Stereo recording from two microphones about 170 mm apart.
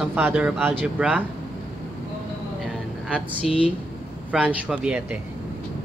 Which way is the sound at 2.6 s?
5° left (ahead or behind).